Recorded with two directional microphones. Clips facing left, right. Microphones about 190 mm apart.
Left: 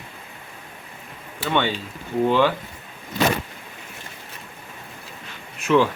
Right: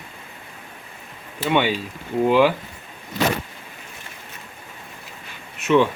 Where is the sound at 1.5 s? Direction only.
10° right (ahead or behind).